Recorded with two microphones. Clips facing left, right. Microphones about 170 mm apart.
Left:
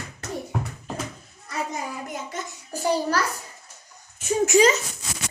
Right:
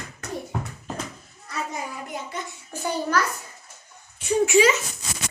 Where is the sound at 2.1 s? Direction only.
40° left (ahead or behind).